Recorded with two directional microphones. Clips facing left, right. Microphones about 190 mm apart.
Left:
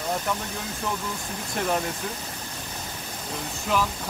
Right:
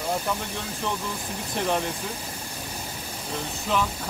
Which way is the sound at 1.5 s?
Centre (ahead or behind).